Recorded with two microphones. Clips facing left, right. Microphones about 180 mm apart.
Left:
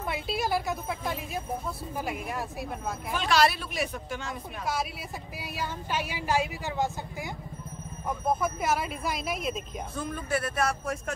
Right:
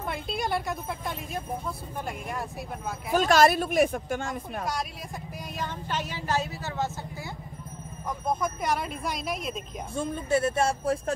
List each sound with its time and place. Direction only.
0.1 s speech: 5° left (ahead or behind)
3.1 s speech: 45° right (ahead or behind)
5.4 s speech: 10° left (ahead or behind)
8.3 s speech: 5° left (ahead or behind)
9.9 s speech: 25° right (ahead or behind)